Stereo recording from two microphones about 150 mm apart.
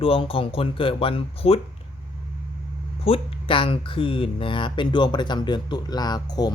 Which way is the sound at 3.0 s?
35° left (ahead or behind).